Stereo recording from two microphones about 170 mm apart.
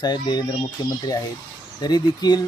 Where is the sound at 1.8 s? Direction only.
25° left (ahead or behind).